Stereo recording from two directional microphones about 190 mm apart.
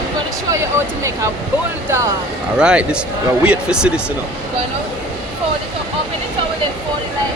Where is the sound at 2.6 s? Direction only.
5° right (ahead or behind).